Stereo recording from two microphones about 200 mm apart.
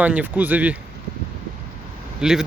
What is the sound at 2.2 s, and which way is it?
Speech, 5° right (ahead or behind).